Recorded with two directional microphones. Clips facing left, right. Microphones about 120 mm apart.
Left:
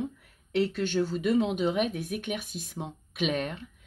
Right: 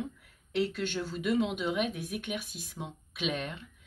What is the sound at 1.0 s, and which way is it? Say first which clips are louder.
Speech: left 4 dB; 35° left (ahead or behind).